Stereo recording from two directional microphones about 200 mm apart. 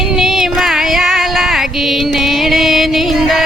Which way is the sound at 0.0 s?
Centre (ahead or behind).